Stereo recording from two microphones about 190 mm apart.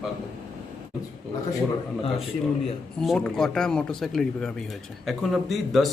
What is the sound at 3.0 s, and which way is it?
Speech, centre (ahead or behind).